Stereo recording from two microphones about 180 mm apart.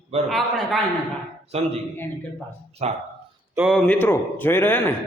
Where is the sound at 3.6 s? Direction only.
Centre (ahead or behind).